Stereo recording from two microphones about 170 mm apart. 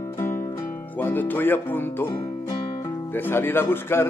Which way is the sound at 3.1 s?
10° left (ahead or behind).